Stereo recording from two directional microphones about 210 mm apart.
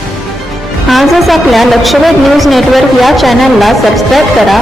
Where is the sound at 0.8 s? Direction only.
Centre (ahead or behind).